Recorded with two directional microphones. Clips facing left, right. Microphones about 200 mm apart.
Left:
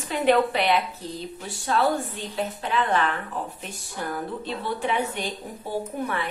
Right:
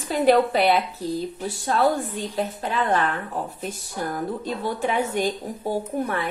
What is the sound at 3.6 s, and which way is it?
A woman's voice, 40° right (ahead or behind).